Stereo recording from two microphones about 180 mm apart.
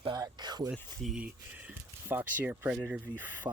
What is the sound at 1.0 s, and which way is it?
Speech, 5° right (ahead or behind).